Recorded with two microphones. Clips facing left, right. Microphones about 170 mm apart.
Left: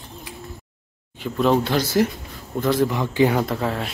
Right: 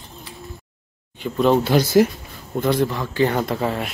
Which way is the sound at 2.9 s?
15° left (ahead or behind).